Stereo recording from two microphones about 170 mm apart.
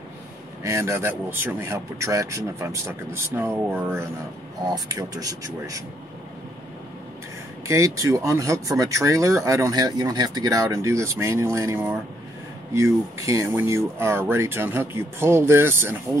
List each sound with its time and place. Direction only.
0.7 s speech: 15° right (ahead or behind)
4.6 s speech: 20° right (ahead or behind)
7.6 s speech: 20° right (ahead or behind)